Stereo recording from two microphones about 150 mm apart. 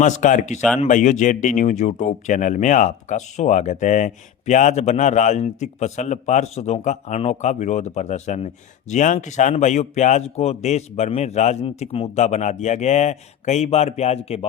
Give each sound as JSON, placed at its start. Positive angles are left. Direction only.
{"t": 0.0, "sound": "speech", "side_deg": 55}